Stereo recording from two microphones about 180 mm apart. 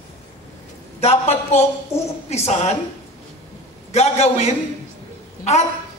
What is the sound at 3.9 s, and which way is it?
Speech, 35° left (ahead or behind).